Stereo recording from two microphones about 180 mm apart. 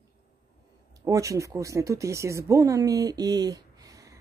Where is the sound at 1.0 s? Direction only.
15° right (ahead or behind).